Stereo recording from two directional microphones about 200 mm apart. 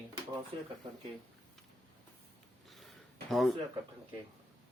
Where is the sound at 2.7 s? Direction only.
Centre (ahead or behind).